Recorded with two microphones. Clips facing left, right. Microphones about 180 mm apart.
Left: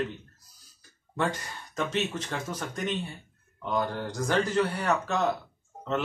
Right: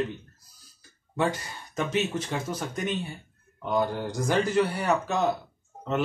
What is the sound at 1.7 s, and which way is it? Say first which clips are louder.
Speech: right 2 dB; 10° right (ahead or behind).